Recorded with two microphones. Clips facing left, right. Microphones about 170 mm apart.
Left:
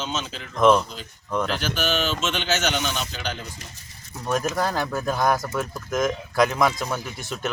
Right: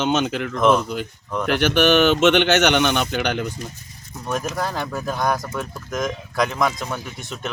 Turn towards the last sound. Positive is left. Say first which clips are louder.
# left 1 dB
turn(degrees=0)  # may be behind; listen again after turning